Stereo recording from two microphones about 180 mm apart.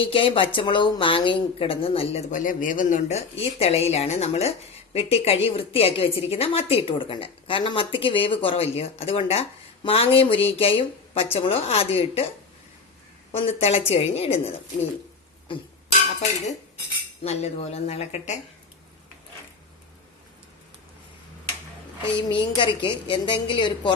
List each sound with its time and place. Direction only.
0.0 s a woman's voice: 30° left (ahead or behind)
13.4 s a woman's voice: 35° left (ahead or behind)
17.2 s a woman's voice: 35° left (ahead or behind)
22.3 s a woman's voice: 25° left (ahead or behind)